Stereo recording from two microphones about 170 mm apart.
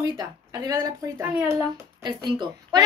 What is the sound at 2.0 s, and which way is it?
Speech, 25° right (ahead or behind).